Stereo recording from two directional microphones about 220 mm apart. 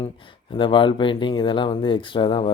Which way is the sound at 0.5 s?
20° left (ahead or behind).